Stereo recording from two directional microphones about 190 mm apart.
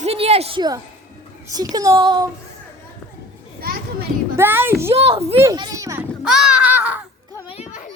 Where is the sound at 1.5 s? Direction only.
20° right (ahead or behind).